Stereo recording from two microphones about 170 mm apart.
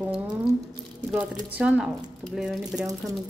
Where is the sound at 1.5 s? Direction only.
5° right (ahead or behind).